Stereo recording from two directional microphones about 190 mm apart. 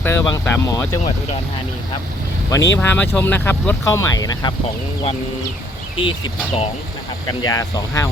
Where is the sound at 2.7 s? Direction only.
10° left (ahead or behind).